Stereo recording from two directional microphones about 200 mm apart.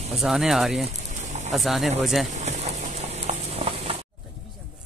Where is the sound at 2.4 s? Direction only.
35° right (ahead or behind).